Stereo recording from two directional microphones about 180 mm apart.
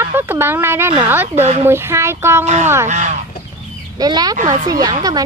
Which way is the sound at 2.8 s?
40° right (ahead or behind).